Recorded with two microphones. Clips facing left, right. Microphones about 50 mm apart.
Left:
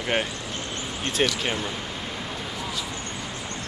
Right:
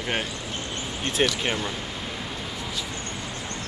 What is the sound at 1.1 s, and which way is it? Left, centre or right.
Speech, centre.